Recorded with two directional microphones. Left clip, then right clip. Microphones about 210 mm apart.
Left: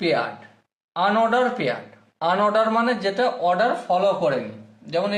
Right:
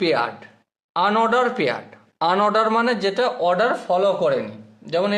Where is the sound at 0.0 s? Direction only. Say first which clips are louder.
Right 2 dB; 45° right (ahead or behind).